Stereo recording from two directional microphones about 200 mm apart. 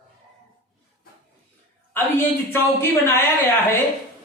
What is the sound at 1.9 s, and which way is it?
A woman's voice, 10° left (ahead or behind).